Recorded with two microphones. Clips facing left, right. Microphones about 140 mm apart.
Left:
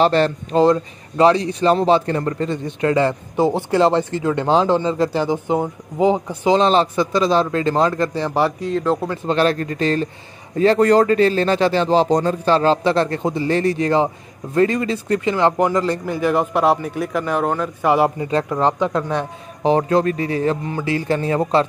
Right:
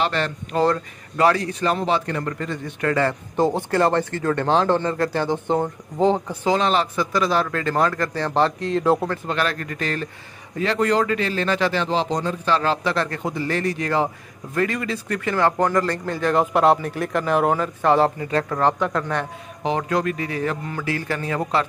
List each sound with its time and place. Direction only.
0.0 s speech: 35° left (ahead or behind)
0.6 s a man's voice: 20° left (ahead or behind)
6.6 s speech: 30° left (ahead or behind); by 9.0 s 5° right (ahead or behind)
9.3 s speech: 30° left (ahead or behind); by 17.6 s centre (ahead or behind)
17.8 s a man's voice: 10° left (ahead or behind)
19.6 s speech: 35° left (ahead or behind)